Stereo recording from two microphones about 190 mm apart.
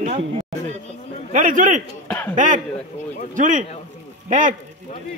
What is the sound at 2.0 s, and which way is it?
Chuckle, 10° left (ahead or behind).